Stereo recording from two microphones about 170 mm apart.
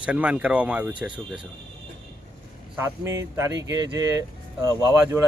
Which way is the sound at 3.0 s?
20° right (ahead or behind).